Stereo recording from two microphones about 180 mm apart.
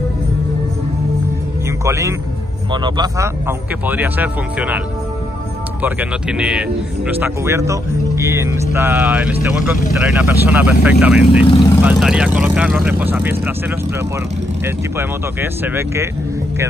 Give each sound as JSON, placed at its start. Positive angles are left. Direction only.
{"t": 1.9, "sound": "speech", "side_deg": -15}
{"t": 11.4, "sound": "speech", "side_deg": 25}
{"t": 11.8, "sound": "speech", "side_deg": -5}
{"t": 15.0, "sound": "speech", "side_deg": -10}